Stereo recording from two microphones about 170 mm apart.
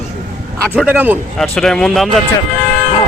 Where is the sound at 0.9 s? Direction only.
10° right (ahead or behind).